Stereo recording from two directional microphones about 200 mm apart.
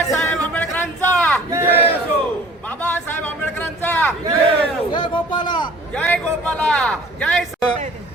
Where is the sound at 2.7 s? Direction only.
10° left (ahead or behind).